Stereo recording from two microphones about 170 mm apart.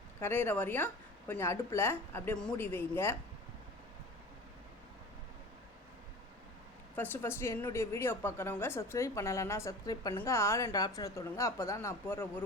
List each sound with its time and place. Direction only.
0.2 s a woman's voice: 15° left (ahead or behind)
6.9 s a woman's voice: 10° left (ahead or behind)